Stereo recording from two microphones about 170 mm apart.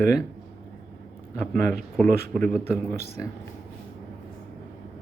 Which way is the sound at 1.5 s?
55° right (ahead or behind).